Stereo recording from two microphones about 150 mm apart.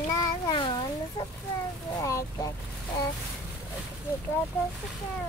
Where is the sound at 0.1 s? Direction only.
25° left (ahead or behind).